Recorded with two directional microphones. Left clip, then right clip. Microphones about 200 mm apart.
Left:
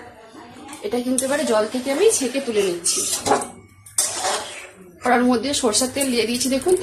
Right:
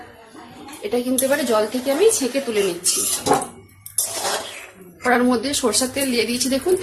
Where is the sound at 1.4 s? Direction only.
10° right (ahead or behind).